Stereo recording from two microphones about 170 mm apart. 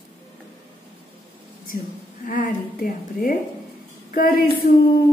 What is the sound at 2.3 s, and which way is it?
A woman's voice, 55° left (ahead or behind).